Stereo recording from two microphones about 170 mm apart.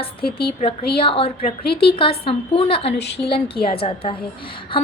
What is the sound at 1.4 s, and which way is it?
Speech, 60° left (ahead or behind).